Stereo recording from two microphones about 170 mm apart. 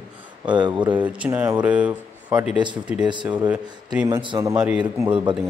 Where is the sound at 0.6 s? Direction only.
25° right (ahead or behind).